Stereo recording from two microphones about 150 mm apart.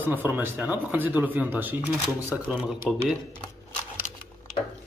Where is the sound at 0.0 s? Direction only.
10° right (ahead or behind).